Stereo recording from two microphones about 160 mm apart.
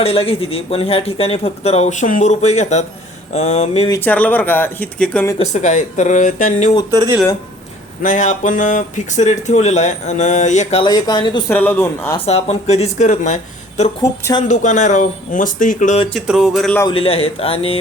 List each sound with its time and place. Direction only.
0.0 s speech: 35° left (ahead or behind)
4.0 s speech: 10° left (ahead or behind)
5.5 s speech: 50° left (ahead or behind)
6.9 s speech: 25° right (ahead or behind)
8.0 s speech: 50° left (ahead or behind)
10.8 s speech: 25° left (ahead or behind)
11.4 s speech: 15° left (ahead or behind)
12.1 s speech: 40° left (ahead or behind)
16.2 s a sound: 5° right (ahead or behind)
16.8 s speech: 35° left (ahead or behind)